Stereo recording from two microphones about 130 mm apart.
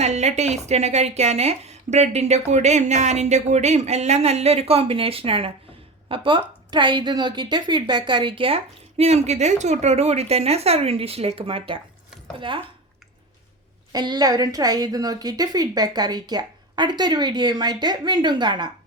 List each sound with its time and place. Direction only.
0.0 s a woman's voice: 60° right (ahead or behind); by 12.6 s 40° right (ahead or behind)
13.9 s a woman's voice: 35° right (ahead or behind)